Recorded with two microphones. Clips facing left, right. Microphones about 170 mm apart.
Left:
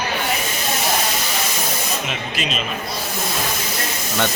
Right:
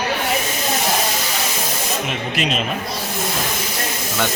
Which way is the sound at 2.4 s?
65° right (ahead or behind).